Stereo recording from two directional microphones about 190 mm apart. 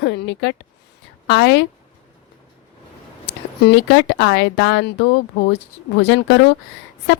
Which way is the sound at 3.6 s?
65° left (ahead or behind).